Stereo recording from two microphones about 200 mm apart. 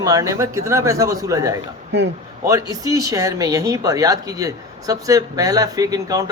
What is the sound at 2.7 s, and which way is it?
Speech, 15° right (ahead or behind).